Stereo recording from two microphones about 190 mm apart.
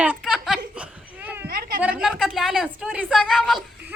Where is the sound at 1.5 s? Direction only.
50° right (ahead or behind).